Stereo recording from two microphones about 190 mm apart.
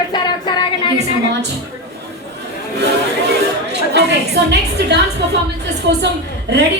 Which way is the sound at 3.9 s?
65° right (ahead or behind).